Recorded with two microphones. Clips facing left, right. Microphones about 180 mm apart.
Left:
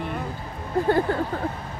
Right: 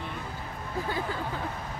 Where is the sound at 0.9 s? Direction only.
55° left (ahead or behind).